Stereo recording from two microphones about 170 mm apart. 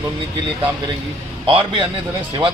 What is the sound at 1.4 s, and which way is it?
Speech, 30° right (ahead or behind).